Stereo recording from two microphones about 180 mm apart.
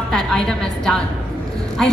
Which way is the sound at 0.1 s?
5° left (ahead or behind).